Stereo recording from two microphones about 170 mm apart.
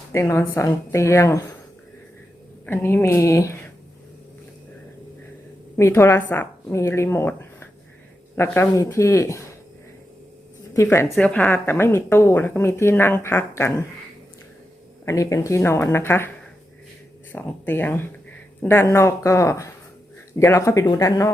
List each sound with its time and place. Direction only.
0.1 s a woman's voice: 15° left (ahead or behind)
2.6 s a woman's voice: 15° left (ahead or behind)
5.7 s a woman's voice: 15° left (ahead or behind)
10.8 s a woman's voice: 15° left (ahead or behind)
15.0 s a woman's voice: 20° left (ahead or behind)
17.3 s a woman's voice: 10° left (ahead or behind)